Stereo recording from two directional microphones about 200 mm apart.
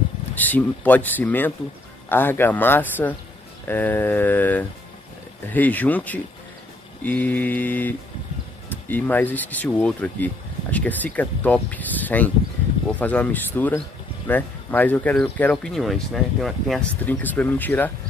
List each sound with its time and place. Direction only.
0.4 s speech: 10° left (ahead or behind)